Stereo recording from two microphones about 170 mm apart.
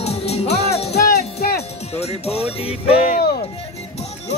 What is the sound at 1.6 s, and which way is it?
Music, 40° left (ahead or behind).